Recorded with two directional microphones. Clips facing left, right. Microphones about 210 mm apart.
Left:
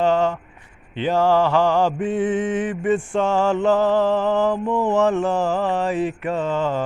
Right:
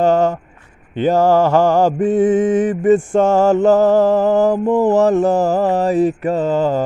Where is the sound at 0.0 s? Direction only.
45° right (ahead or behind).